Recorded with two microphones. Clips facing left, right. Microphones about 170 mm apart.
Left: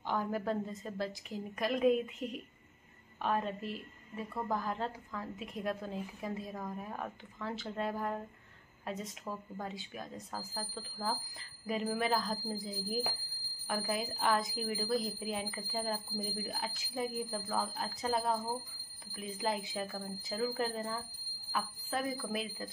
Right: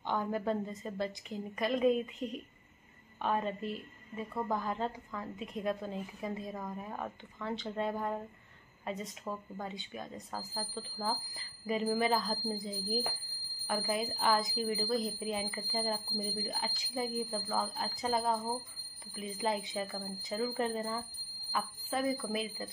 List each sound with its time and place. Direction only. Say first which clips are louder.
0.0 s a woman's voice: right 1 dB; centre (ahead or behind)